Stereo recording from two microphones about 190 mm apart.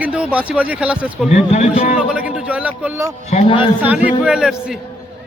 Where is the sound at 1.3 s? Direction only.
35° left (ahead or behind).